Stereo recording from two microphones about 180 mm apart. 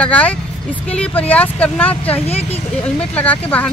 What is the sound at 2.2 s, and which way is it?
Speech, 35° left (ahead or behind).